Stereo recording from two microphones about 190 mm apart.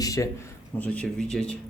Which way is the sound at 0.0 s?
15° left (ahead or behind).